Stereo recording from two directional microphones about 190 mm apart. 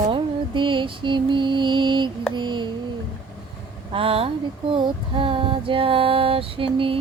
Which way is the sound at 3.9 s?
30° right (ahead or behind).